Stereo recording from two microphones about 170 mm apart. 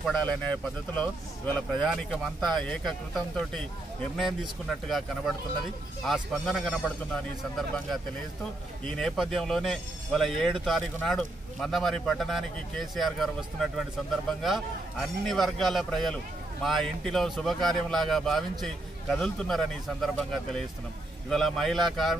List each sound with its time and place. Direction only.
0.0 s a man's voice: 5° left (ahead or behind)